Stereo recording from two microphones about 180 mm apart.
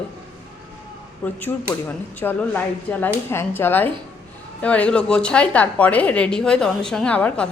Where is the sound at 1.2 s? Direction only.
15° left (ahead or behind).